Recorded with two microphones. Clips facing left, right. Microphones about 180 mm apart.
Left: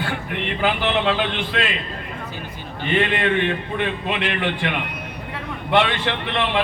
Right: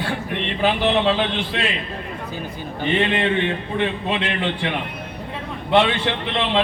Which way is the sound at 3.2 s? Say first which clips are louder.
Even; 20° right (ahead or behind).